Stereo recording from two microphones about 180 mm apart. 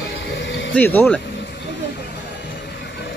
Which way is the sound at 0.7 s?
10° left (ahead or behind).